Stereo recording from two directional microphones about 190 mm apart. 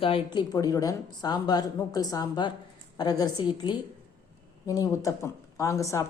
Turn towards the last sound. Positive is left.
turn(degrees=15)  # may be behind; listen again after turning